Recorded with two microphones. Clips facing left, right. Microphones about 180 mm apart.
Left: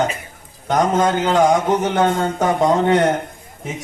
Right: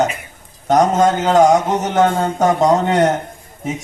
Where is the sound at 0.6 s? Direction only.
45° right (ahead or behind).